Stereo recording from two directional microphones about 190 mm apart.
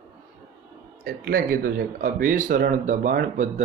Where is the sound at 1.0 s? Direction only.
50° right (ahead or behind).